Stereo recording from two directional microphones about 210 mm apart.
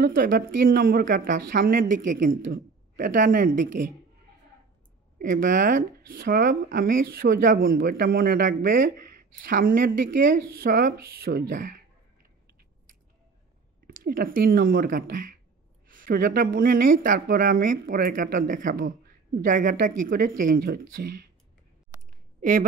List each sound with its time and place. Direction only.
0.0 s speech: 45° right (ahead or behind)
5.2 s speech: 40° right (ahead or behind)
14.0 s speech: 45° right (ahead or behind)
22.4 s speech: 40° right (ahead or behind)